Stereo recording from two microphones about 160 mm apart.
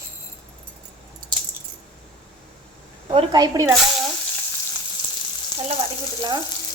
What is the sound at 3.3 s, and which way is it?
Speech, 20° right (ahead or behind).